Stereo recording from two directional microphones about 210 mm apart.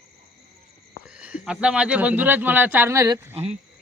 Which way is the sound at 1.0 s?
5° right (ahead or behind).